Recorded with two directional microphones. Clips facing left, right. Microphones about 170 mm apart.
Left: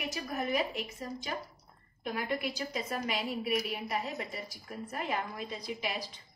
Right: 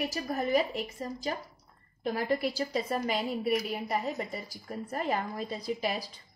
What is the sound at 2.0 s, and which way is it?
A woman's voice, 35° right (ahead or behind).